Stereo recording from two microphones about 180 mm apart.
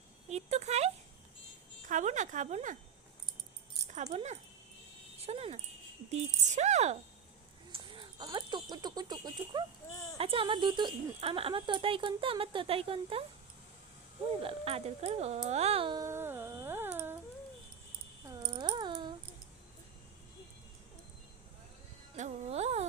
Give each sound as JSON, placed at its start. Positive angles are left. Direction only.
{"t": 0.3, "sound": "speech", "side_deg": -35}
{"t": 1.9, "sound": "speech", "side_deg": -45}
{"t": 3.8, "sound": "speech", "side_deg": -40}
{"t": 7.7, "sound": "a sound", "side_deg": -30}
{"t": 8.7, "sound": "speech", "side_deg": -20}
{"t": 14.4, "sound": "speech", "side_deg": -35}
{"t": 18.3, "sound": "a sound", "side_deg": -20}
{"t": 22.1, "sound": "speech", "side_deg": -40}